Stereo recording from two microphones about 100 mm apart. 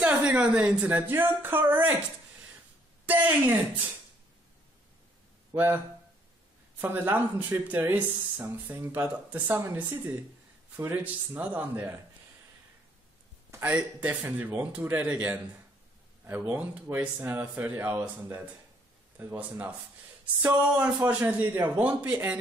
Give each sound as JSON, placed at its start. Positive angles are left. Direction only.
{"t": 0.0, "sound": "speech", "side_deg": -15}
{"t": 3.1, "sound": "speech", "side_deg": -15}
{"t": 5.5, "sound": "speech", "side_deg": -25}
{"t": 6.8, "sound": "speech", "side_deg": -20}
{"t": 13.5, "sound": "speech", "side_deg": -15}
{"t": 17.9, "sound": "speech", "side_deg": -15}
{"t": 21.1, "sound": "speech", "side_deg": -15}